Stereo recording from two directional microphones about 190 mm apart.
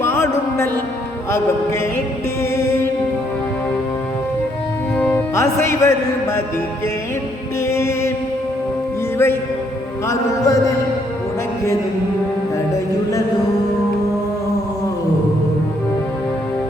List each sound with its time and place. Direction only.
0.0 s music: 10° left (ahead or behind)
4.9 s music: 10° left (ahead or behind)
7.6 s music: 15° left (ahead or behind)
9.1 s music: 10° left (ahead or behind)